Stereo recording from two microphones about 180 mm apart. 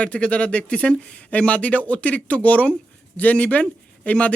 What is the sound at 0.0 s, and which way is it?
Speech, 5° left (ahead or behind).